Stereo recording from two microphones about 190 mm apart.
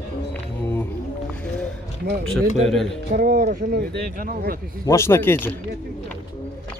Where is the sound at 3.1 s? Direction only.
55° right (ahead or behind).